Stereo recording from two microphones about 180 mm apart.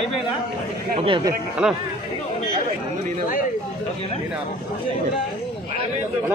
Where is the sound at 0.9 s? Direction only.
30° right (ahead or behind).